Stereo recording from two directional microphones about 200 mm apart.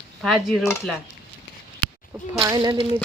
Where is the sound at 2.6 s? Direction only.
25° right (ahead or behind).